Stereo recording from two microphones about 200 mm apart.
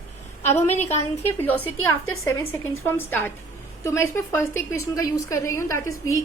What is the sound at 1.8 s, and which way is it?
Speech, 90° left.